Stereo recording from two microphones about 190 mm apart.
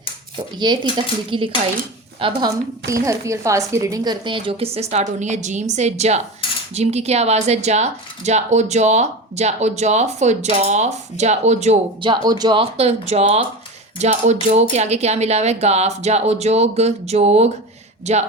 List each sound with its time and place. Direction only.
0.6 s speech: 25° right (ahead or behind)
2.9 s a woman's voice: 15° right (ahead or behind); by 12.1 s 35° right (ahead or behind)
12.1 s speech: 20° right (ahead or behind)